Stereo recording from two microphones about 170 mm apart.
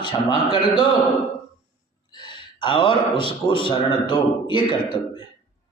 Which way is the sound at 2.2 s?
30° left (ahead or behind).